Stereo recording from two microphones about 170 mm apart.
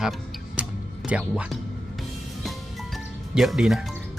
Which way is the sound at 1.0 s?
5° right (ahead or behind).